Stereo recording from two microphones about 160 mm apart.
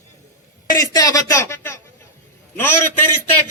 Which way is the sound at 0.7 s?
20° left (ahead or behind).